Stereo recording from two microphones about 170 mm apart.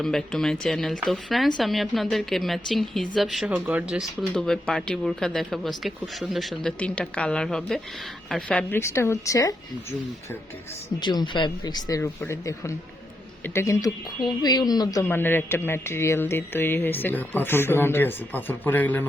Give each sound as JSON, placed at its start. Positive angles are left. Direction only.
{"t": 0.0, "sound": "speech", "side_deg": 0}
{"t": 11.0, "sound": "speech", "side_deg": 25}